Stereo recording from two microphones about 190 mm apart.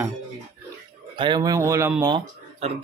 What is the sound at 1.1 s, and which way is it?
Speech, 25° right (ahead or behind).